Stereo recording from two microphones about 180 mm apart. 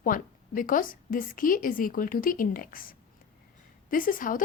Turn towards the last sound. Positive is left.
turn(degrees=50)  # may be behind; listen again after turning